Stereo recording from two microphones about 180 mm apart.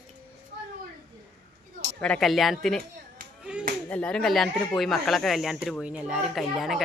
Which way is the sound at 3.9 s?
5° left (ahead or behind).